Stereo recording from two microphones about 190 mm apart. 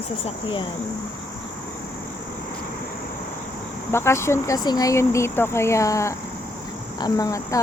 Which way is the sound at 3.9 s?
15° left (ahead or behind).